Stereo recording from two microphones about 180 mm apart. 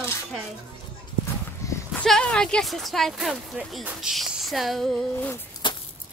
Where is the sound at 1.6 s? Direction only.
20° left (ahead or behind).